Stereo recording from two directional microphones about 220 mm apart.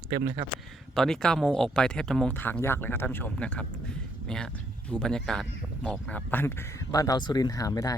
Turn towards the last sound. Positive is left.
turn(degrees=15)  # may be behind; listen again after turning